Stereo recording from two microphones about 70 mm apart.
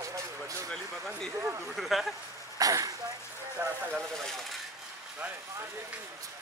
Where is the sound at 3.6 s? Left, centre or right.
Right.